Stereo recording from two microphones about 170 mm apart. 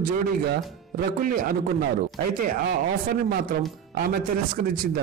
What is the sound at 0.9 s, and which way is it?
Speech, 55° right (ahead or behind).